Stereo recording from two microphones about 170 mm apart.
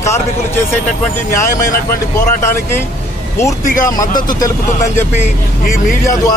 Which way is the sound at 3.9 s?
20° left (ahead or behind).